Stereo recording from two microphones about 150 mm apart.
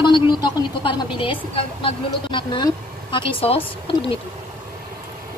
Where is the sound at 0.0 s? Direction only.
30° left (ahead or behind).